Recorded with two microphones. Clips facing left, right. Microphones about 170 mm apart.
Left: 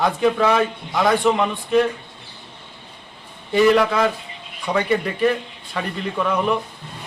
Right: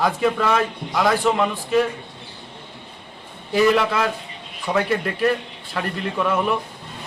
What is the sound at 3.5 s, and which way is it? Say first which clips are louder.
A man's voice: left 2 dB; centre (ahead or behind).